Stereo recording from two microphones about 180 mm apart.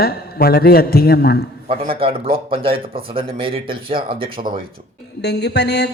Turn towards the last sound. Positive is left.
turn(degrees=65)  # may be behind; listen again after turning